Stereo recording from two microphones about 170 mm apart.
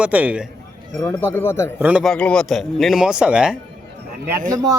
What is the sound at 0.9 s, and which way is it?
Speech, 15° left (ahead or behind).